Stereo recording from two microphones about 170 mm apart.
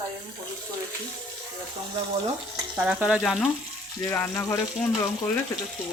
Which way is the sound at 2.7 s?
10° right (ahead or behind).